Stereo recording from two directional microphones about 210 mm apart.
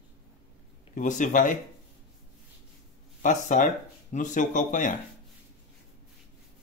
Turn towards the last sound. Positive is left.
turn(degrees=40)  # may be behind; listen again after turning